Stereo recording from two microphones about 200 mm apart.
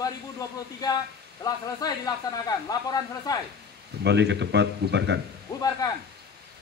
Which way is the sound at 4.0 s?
60° right (ahead or behind).